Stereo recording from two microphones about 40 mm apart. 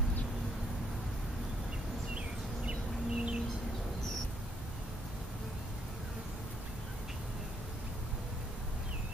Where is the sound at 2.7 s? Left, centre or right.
Right.